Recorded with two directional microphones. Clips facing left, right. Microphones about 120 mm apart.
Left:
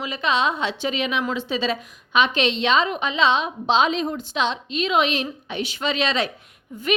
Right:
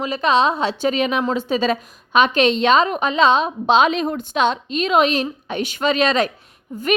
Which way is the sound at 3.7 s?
60° right (ahead or behind).